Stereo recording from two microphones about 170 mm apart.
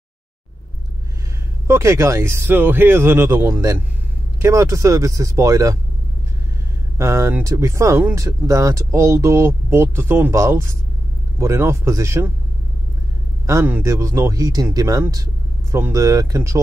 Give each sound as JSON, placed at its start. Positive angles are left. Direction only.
{"t": 1.7, "sound": "a man's voice", "side_deg": -15}
{"t": 7.0, "sound": "speech", "side_deg": -15}
{"t": 13.5, "sound": "a man's voice", "side_deg": -15}